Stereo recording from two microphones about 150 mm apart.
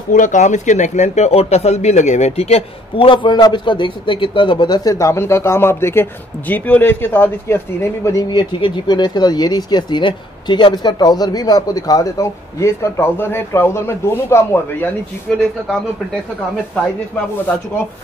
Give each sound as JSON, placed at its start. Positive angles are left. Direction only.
{"t": 0.1, "sound": "speech", "side_deg": 60}
{"t": 15.3, "sound": "speech", "side_deg": 5}